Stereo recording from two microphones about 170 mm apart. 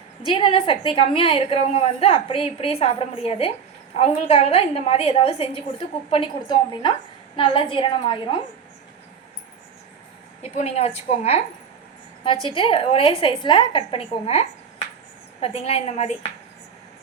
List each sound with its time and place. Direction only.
0.3 s a woman's voice: 30° left (ahead or behind)
10.5 s a woman's voice: 40° left (ahead or behind)